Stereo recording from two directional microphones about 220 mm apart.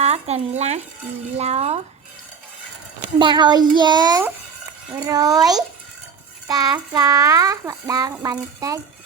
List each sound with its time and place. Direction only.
0.0 s a child's voice: 30° right (ahead or behind)
3.2 s a child's voice: 20° right (ahead or behind)
4.9 s child singing: 15° right (ahead or behind)